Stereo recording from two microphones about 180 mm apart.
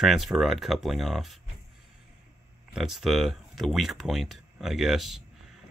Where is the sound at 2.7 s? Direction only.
Centre (ahead or behind).